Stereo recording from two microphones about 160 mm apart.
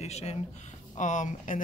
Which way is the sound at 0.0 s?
40° left (ahead or behind).